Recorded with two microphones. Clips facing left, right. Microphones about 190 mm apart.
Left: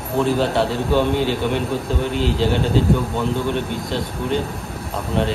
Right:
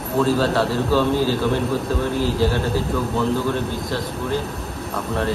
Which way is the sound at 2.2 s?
25° left (ahead or behind).